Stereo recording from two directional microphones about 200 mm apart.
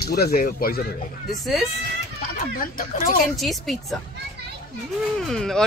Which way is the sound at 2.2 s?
45° left (ahead or behind).